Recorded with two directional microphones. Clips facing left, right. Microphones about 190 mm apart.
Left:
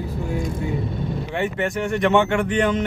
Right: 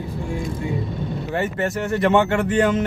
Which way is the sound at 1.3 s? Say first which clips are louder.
Right 1 dB; centre (ahead or behind).